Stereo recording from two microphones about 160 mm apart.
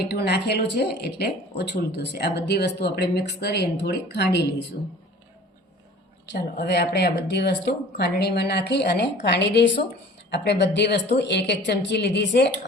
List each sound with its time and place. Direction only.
0.1 s speech: 90° left
6.2 s speech: 85° left